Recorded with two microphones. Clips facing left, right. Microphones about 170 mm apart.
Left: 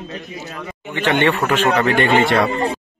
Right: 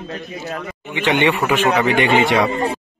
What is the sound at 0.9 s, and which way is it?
Speech, 15° right (ahead or behind).